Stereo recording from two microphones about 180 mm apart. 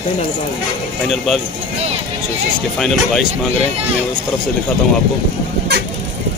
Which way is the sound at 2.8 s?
Centre (ahead or behind).